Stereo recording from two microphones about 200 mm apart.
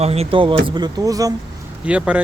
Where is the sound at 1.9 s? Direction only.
5° right (ahead or behind).